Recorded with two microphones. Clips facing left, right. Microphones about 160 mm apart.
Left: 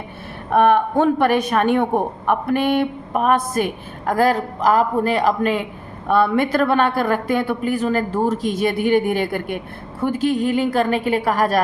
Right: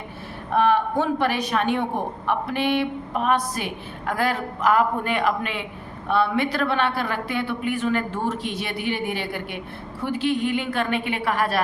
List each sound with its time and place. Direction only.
0.5 s a woman's voice: 55° left (ahead or behind)